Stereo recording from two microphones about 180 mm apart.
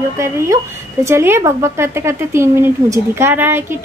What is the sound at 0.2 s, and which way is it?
Speech, 15° right (ahead or behind).